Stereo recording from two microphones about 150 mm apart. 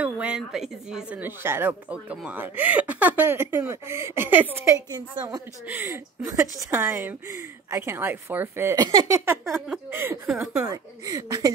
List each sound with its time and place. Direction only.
0.0 s speech: 5° right (ahead or behind)
4.7 s speech: 25° right (ahead or behind); by 10.6 s 5° right (ahead or behind)
10.6 s speech: 20° right (ahead or behind)